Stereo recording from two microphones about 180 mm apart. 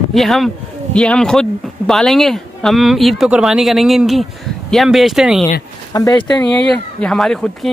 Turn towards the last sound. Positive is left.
turn(degrees=5)  # may be behind; listen again after turning